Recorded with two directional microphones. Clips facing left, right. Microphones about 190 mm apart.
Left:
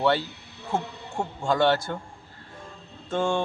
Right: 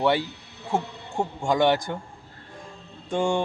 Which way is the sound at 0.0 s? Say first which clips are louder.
Right 1 dB; 15° right (ahead or behind).